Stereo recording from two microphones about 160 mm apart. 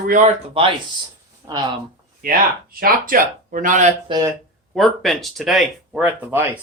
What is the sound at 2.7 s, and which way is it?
Speech, 65° right (ahead or behind).